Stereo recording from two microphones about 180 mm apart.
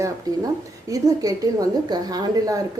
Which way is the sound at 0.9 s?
20° right (ahead or behind).